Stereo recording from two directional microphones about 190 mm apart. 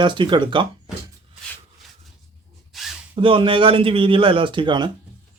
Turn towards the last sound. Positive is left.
turn(degrees=-25)  # may be behind; listen again after turning